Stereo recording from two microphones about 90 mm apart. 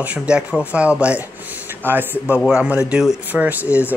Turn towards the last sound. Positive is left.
turn(degrees=-15)  # may be behind; listen again after turning